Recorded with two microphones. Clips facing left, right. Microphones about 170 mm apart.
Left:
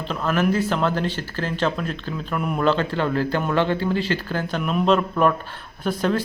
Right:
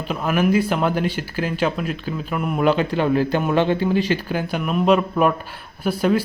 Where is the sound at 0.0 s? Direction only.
10° right (ahead or behind).